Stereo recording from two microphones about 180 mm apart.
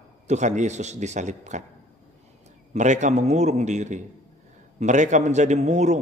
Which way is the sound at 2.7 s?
40° right (ahead or behind).